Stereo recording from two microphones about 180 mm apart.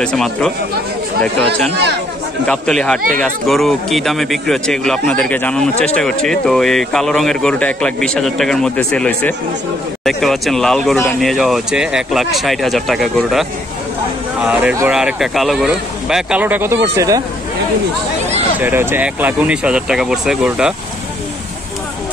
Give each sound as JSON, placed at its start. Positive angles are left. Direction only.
{"t": 0.0, "sound": "speech", "side_deg": 5}
{"t": 2.4, "sound": "speech", "side_deg": 5}
{"t": 18.6, "sound": "speech", "side_deg": -10}